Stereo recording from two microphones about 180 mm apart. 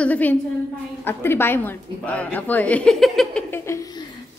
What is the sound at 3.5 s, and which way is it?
Speech, 15° left (ahead or behind).